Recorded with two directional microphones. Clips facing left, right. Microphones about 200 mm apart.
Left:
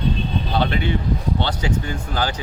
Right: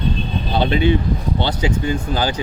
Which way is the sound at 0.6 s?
20° right (ahead or behind).